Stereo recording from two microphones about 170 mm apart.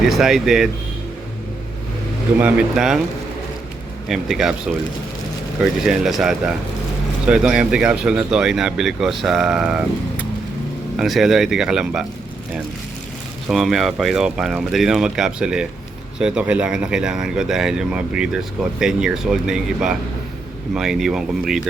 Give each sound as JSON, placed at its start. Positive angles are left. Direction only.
{"t": 0.0, "sound": "speech", "side_deg": 0}
{"t": 2.4, "sound": "speech", "side_deg": -5}
{"t": 4.1, "sound": "speech", "side_deg": 0}
{"t": 5.8, "sound": "speech", "side_deg": 0}
{"t": 13.5, "sound": "speech", "side_deg": 0}